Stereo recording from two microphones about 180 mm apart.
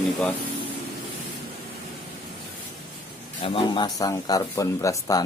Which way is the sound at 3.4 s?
30° left (ahead or behind).